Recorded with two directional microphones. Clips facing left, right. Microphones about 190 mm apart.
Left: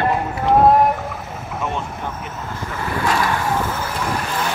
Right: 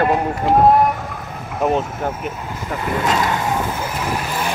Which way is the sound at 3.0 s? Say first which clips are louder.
Even; 20° right (ahead or behind).